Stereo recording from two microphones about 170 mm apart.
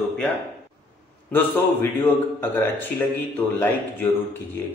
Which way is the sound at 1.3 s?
10° left (ahead or behind).